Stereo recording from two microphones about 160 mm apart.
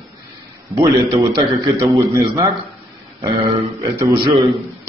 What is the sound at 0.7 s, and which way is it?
A man's voice, 20° right (ahead or behind).